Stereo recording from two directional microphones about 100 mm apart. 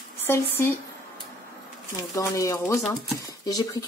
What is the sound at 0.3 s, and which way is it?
Speech, 25° left (ahead or behind).